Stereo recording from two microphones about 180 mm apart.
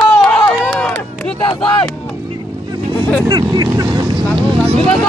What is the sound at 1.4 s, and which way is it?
Vehicle, 25° left (ahead or behind).